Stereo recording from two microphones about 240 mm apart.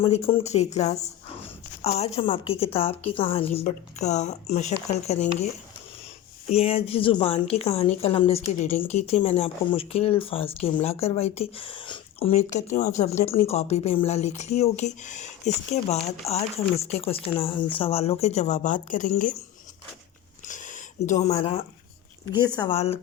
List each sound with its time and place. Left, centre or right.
0.0 s a woman's voice: left
6.5 s a woman's voice: left
20.5 s a sound: left
22.4 s a woman's voice: centre